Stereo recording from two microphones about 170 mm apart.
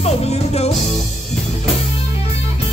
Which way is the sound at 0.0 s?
40° left (ahead or behind).